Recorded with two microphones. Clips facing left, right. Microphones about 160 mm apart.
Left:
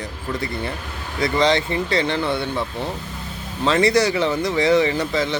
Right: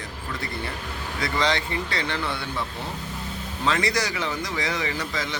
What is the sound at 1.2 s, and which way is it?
Speech, 25° left (ahead or behind).